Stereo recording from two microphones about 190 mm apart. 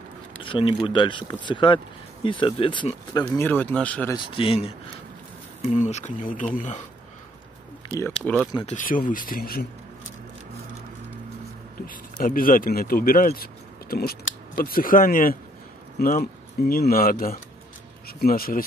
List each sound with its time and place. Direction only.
0.4 s speech: 25° left (ahead or behind)
3.3 s speech: 10° left (ahead or behind)
4.1 s speech: 25° left (ahead or behind)
8.6 s speech: 45° left (ahead or behind)
11.8 s speech: 45° left (ahead or behind)